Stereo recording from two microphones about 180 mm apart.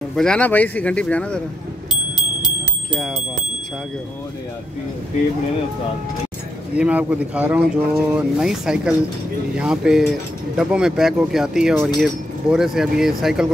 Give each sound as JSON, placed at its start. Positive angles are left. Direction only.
{"t": 0.1, "sound": "speech", "side_deg": 5}
{"t": 2.9, "sound": "speech", "side_deg": 0}
{"t": 6.7, "sound": "speech", "side_deg": -10}